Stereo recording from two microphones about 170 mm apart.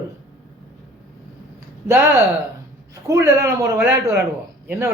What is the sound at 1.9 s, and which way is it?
A woman's voice, 15° right (ahead or behind).